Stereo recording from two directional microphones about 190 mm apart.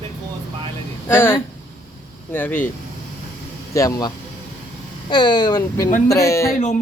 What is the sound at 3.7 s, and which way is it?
Speech, 15° left (ahead or behind).